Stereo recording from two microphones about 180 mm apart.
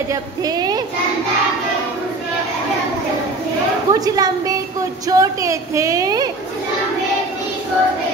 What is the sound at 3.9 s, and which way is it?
A woman's voice, 20° right (ahead or behind).